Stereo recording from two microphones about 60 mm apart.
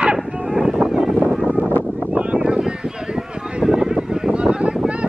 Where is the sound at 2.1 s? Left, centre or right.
Right.